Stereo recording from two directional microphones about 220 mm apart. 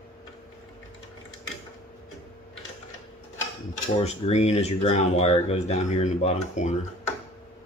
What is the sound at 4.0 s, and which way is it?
Speech, 30° left (ahead or behind).